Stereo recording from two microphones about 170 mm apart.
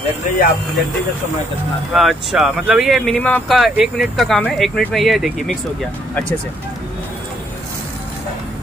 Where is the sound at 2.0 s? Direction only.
Centre (ahead or behind).